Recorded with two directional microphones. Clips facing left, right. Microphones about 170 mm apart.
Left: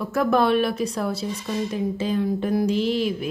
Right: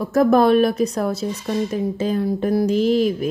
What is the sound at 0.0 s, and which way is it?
Speech, 40° right (ahead or behind).